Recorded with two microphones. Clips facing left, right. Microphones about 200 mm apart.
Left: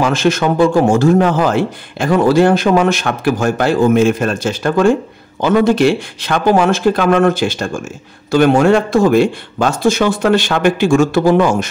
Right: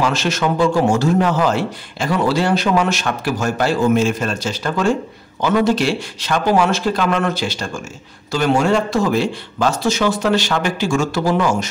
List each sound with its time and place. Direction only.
0.0 s speech: 55° left (ahead or behind)